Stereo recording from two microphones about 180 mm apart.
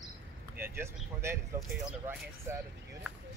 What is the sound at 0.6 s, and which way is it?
Speech, 15° right (ahead or behind).